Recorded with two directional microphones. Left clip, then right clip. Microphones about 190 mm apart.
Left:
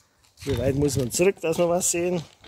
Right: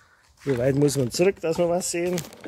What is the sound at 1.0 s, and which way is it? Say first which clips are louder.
Speech: even; 25° right (ahead or behind).